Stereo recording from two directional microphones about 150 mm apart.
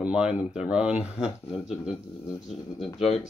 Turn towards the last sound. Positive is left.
turn(degrees=40)  # may be behind; listen again after turning